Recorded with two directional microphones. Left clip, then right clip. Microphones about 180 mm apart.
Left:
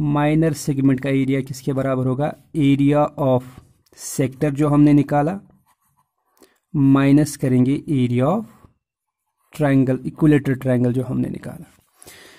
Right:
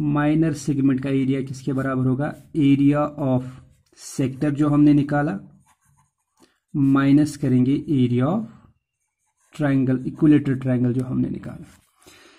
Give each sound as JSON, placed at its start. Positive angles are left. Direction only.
{"t": 0.0, "sound": "speech", "side_deg": 60}
{"t": 6.4, "sound": "speech", "side_deg": 55}
{"t": 9.5, "sound": "speech", "side_deg": 55}